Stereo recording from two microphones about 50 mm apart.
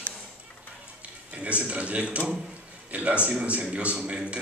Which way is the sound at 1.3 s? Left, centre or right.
Right.